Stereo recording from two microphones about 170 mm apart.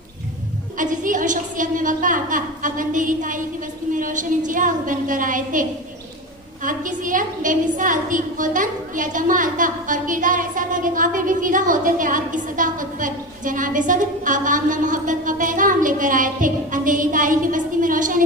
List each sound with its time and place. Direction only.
0.8 s a woman's voice: 50° right (ahead or behind)
6.7 s a woman's voice: 50° right (ahead or behind)